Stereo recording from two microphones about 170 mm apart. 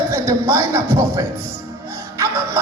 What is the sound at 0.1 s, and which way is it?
Music, 15° right (ahead or behind).